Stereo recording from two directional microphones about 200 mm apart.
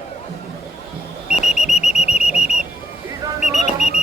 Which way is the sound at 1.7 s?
35° left (ahead or behind).